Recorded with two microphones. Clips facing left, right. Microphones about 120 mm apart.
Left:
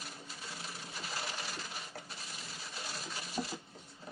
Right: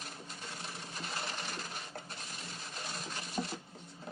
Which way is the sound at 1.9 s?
35° right (ahead or behind).